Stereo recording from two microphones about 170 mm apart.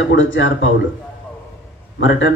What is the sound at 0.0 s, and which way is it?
Speech, 90° left.